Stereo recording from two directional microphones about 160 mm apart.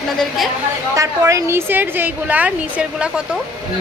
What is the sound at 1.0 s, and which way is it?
A woman's voice, 20° right (ahead or behind).